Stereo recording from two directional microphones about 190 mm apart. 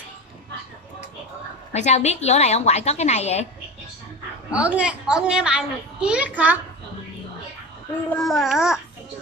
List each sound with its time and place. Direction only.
1.7 s a woman's voice: 35° left (ahead or behind)
4.5 s a child's voice: 5° right (ahead or behind)
8.1 s a child's voice: centre (ahead or behind)